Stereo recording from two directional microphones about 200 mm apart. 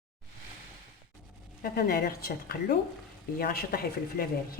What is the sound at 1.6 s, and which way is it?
Speech, 50° left (ahead or behind).